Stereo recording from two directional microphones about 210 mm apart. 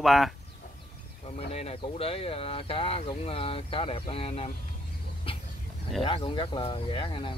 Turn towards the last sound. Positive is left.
turn(degrees=25)  # may be behind; listen again after turning